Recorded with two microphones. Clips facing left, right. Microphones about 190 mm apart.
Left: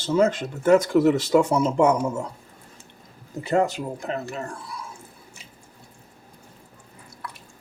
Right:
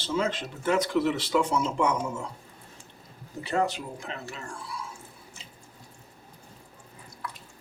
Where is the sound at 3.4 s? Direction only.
40° left (ahead or behind).